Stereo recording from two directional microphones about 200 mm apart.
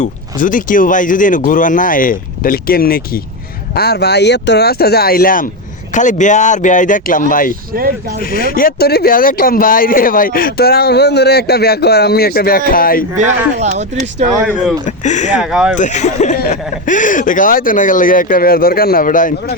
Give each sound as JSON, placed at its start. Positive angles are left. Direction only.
{"t": 0.0, "sound": "speech", "side_deg": 40}
{"t": 7.7, "sound": "speech", "side_deg": -45}
{"t": 8.2, "sound": "speech", "side_deg": 45}
{"t": 13.1, "sound": "speech", "side_deg": -35}
{"t": 14.4, "sound": "speech", "side_deg": -5}
{"t": 14.8, "sound": "speech", "side_deg": 35}
{"t": 15.4, "sound": "speech", "side_deg": -5}
{"t": 15.7, "sound": "speech", "side_deg": 35}